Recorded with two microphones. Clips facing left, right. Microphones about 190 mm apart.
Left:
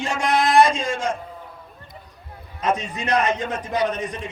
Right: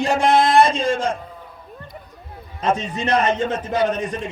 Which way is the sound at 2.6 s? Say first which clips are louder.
Right 2 dB; 30° right (ahead or behind).